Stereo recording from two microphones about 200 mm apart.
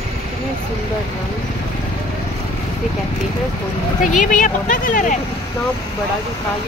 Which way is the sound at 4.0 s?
40° left (ahead or behind).